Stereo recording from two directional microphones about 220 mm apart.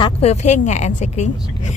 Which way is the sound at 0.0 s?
30° left (ahead or behind).